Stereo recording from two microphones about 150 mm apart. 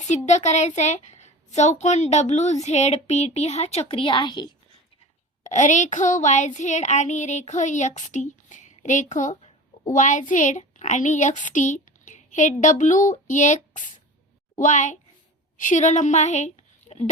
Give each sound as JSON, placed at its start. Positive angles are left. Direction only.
{"t": 0.1, "sound": "child singing", "side_deg": 50}
{"t": 5.4, "sound": "child singing", "side_deg": 55}
{"t": 9.9, "sound": "a child's voice", "side_deg": 55}
{"t": 15.5, "sound": "child singing", "side_deg": 55}